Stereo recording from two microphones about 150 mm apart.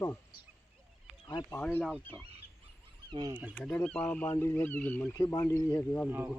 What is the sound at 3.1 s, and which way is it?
Speech, 30° right (ahead or behind).